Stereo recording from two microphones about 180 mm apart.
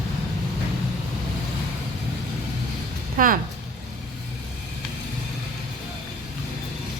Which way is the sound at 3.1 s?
50° right (ahead or behind).